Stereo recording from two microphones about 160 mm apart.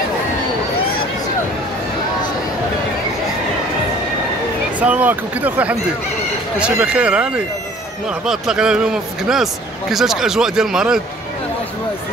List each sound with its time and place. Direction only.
4.7 s speech: 10° right (ahead or behind)